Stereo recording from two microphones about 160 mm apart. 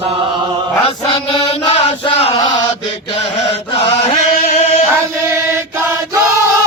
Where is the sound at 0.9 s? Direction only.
35° left (ahead or behind).